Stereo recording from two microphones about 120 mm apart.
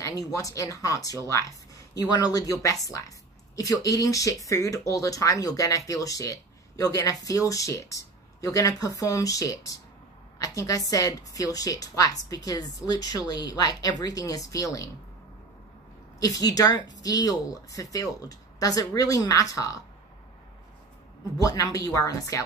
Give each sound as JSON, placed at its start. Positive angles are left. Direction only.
{"t": 0.0, "sound": "speech", "side_deg": 30}
{"t": 16.2, "sound": "speech", "side_deg": 30}
{"t": 21.4, "sound": "speech", "side_deg": 30}